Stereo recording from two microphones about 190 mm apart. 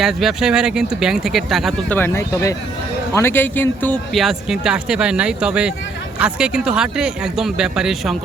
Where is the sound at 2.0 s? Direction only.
15° left (ahead or behind).